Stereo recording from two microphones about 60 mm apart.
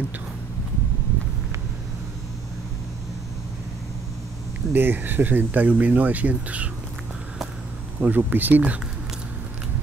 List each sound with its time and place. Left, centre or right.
4.7 s speech: right
8.0 s speech: right